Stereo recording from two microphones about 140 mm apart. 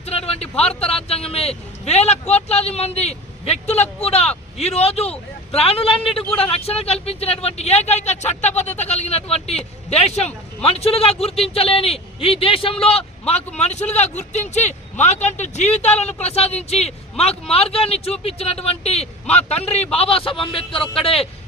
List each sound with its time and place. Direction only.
0.0 s speech: 45° left (ahead or behind)